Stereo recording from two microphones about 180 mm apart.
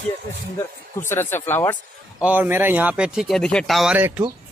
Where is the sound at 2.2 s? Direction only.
10° right (ahead or behind).